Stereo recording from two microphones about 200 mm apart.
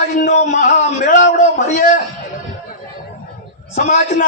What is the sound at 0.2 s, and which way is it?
A man's voice, 40° left (ahead or behind).